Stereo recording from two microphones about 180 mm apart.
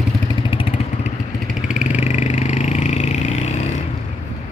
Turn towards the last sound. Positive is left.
turn(degrees=40)  # may be behind; listen again after turning